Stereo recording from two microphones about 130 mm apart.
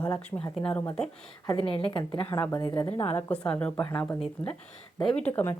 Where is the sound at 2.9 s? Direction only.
50° left (ahead or behind).